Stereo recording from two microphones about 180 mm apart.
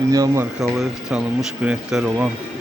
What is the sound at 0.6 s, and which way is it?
Speech, 5° right (ahead or behind).